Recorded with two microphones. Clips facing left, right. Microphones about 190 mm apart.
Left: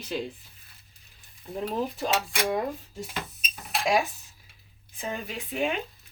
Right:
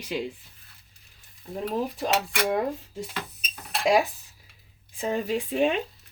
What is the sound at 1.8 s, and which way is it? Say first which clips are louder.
Speech: right 1 dB; 15° right (ahead or behind).